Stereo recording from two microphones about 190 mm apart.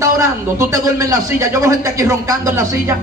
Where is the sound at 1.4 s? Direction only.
15° right (ahead or behind).